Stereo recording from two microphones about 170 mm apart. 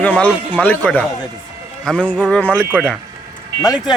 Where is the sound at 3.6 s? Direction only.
20° left (ahead or behind).